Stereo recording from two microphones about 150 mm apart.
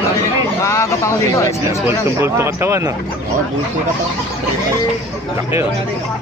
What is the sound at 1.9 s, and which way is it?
Speech, 15° right (ahead or behind).